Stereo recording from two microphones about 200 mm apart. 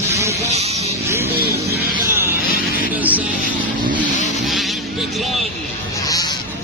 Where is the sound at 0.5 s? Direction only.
30° right (ahead or behind).